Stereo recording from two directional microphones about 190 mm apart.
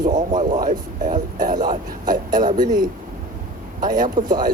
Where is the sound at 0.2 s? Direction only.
40° right (ahead or behind).